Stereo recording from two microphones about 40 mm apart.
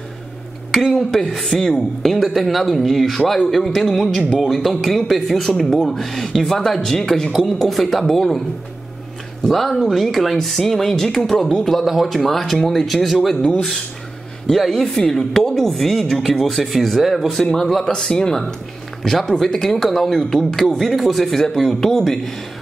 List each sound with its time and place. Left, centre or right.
0.7 s a woman's voice: centre
1.4 s speech: centre
2.1 s a woman's voice: centre
9.4 s a woman's voice: centre
14.5 s a woman's voice: centre
17.8 s a woman's voice: centre